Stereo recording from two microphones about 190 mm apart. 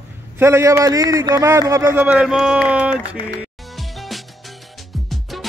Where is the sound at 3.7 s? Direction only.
Centre (ahead or behind).